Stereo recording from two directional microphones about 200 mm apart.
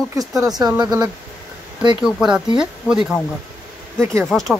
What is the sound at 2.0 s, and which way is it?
A man's voice, 5° right (ahead or behind).